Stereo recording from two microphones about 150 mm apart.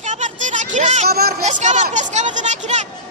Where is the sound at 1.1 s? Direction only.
90° right.